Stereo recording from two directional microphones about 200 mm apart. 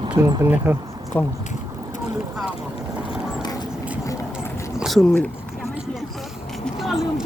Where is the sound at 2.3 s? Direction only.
5° right (ahead or behind).